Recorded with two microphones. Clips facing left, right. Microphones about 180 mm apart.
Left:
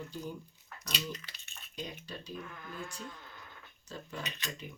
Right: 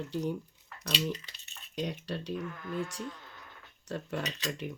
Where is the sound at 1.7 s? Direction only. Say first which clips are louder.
Right 8 dB; 75° right (ahead or behind).